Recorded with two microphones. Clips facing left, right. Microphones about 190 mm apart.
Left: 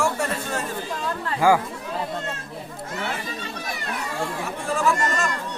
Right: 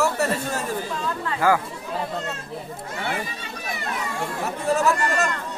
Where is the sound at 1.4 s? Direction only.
15° left (ahead or behind).